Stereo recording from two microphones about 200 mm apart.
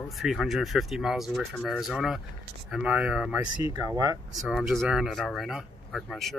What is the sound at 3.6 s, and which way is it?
Speech, 20° right (ahead or behind).